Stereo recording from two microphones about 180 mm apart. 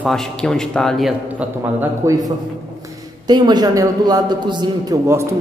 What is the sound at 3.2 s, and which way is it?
A man's voice, 25° right (ahead or behind).